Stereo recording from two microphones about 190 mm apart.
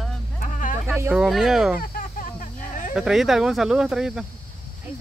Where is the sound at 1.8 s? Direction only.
45° left (ahead or behind).